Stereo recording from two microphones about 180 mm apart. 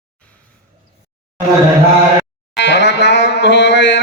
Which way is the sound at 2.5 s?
75° left (ahead or behind).